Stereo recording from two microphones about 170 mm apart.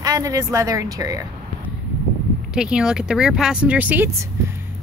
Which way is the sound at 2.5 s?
5° right (ahead or behind).